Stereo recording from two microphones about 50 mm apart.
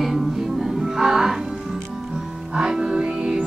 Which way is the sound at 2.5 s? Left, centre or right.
Centre.